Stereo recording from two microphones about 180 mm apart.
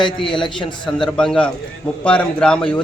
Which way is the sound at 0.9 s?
5° left (ahead or behind).